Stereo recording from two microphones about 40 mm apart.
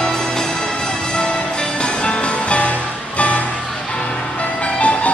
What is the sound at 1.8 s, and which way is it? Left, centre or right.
Music, left.